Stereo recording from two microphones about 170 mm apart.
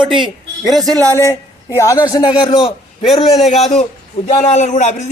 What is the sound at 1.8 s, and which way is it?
Speech, 20° left (ahead or behind).